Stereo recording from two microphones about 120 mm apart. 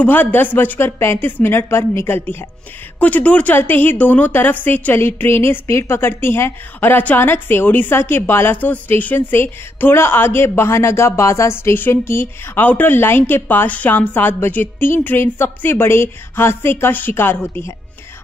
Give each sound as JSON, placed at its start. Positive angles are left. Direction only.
{"t": 0.0, "sound": "a woman's voice", "side_deg": 15}